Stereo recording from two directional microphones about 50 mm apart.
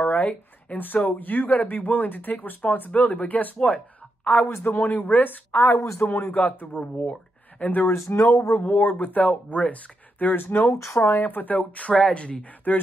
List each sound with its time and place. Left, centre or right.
0.0 s a sound: left
0.8 s speech: left
4.5 s speech: left
4.8 s speech: left
5.7 s speech: left
5.9 s speech: left
7.0 s speech: left
7.9 s speech: left
8.5 s speech: left
10.3 s speech: left
10.7 s speech: left
11.0 s speech: left
11.9 s speech: left
12.7 s speech: left